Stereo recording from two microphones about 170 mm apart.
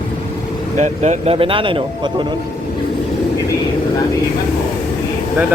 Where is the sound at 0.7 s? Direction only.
45° right (ahead or behind).